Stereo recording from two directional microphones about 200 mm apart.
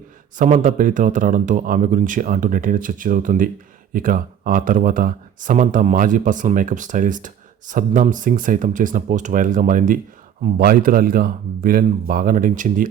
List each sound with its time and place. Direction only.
0.3 s speech: 40° right (ahead or behind)